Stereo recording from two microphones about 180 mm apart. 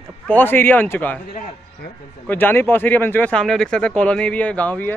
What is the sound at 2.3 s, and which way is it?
Speech, 10° left (ahead or behind).